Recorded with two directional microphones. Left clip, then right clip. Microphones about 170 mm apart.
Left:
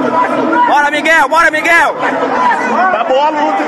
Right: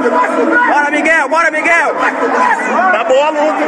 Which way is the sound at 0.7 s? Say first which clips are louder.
Left 1 dB; 10° left (ahead or behind).